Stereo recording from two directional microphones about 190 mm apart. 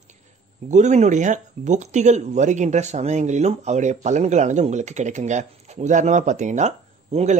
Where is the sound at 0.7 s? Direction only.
40° right (ahead or behind).